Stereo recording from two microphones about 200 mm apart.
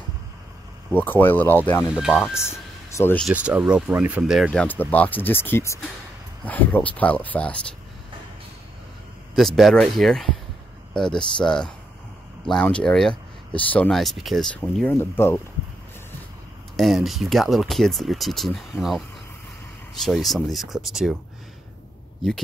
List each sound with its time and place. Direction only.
0.9 s speech: 10° left (ahead or behind)
1.9 s speech: 5° right (ahead or behind)
3.0 s speech: 10° left (ahead or behind)
3.3 s speech: 5° right (ahead or behind)
9.3 s speech: centre (ahead or behind)
16.7 s speech: centre (ahead or behind)